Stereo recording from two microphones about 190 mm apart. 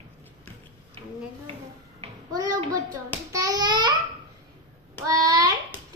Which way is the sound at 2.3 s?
20° right (ahead or behind).